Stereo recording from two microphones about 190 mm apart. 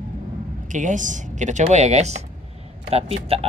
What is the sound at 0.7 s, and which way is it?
Speech, 40° right (ahead or behind).